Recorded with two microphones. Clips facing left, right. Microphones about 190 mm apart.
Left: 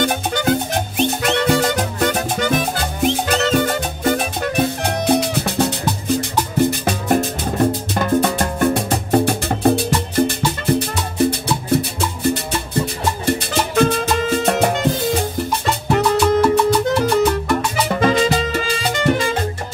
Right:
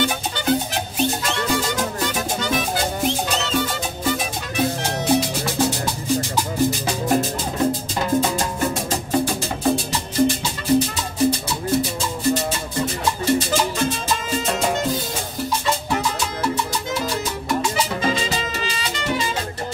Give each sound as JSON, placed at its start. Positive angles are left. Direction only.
{"t": 0.0, "sound": "music", "side_deg": 50}
{"t": 13.2, "sound": "music", "side_deg": 60}